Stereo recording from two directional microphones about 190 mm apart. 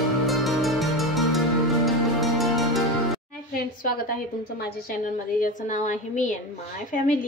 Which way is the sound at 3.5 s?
50° left (ahead or behind).